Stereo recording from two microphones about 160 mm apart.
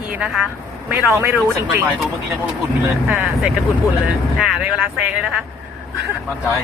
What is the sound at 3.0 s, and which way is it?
Speech, 5° right (ahead or behind).